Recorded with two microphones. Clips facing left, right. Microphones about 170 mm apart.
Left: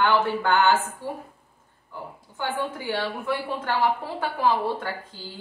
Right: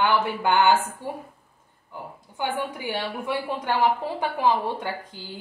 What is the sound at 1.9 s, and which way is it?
A woman's voice, 15° right (ahead or behind).